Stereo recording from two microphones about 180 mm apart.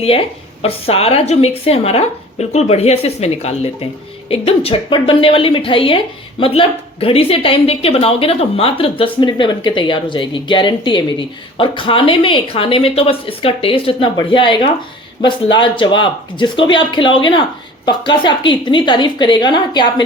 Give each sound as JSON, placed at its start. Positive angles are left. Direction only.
{"t": 0.6, "sound": "a woman's voice", "side_deg": 35}